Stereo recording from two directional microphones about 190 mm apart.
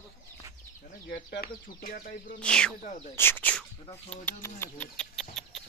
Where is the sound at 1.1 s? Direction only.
55° left (ahead or behind).